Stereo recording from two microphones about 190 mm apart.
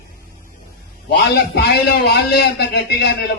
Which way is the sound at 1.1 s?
60° left (ahead or behind).